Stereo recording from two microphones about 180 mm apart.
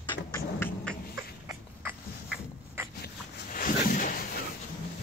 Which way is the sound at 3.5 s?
50° left (ahead or behind).